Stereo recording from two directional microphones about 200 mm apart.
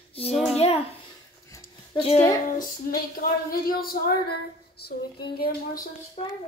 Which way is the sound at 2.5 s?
45° left (ahead or behind).